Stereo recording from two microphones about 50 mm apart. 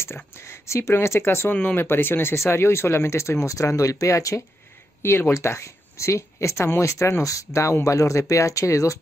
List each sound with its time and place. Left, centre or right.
0.0 s speech: left
1.5 s speech: left
2.3 s speech: left
5.3 s speech: left